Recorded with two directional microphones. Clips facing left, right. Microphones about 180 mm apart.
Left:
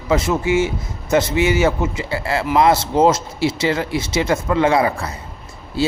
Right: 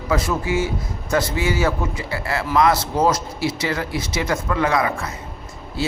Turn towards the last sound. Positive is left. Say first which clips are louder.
# left 5 dB
turn(degrees=30)  # may be behind; listen again after turning